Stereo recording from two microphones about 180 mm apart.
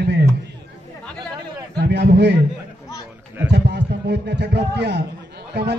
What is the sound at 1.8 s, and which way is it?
Speech, 65° right (ahead or behind).